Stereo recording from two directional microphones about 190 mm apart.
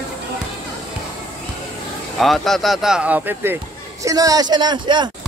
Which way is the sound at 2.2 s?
Centre (ahead or behind).